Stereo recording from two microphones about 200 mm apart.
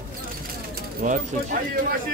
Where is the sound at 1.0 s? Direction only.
40° right (ahead or behind).